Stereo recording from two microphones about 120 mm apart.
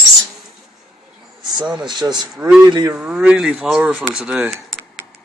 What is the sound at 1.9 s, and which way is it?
Speech, 35° right (ahead or behind).